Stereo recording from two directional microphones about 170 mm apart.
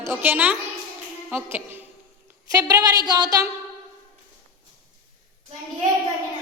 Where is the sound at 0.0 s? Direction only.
15° right (ahead or behind).